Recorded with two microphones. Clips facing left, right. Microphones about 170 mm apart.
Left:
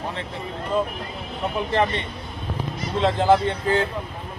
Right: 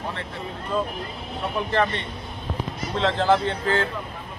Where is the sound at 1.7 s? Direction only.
15° left (ahead or behind).